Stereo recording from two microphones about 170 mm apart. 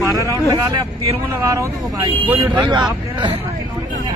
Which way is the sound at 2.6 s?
25° right (ahead or behind).